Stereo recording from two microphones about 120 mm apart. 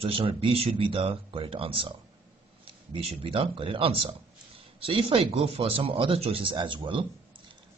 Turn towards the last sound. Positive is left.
turn(degrees=-45)  # may be behind; listen again after turning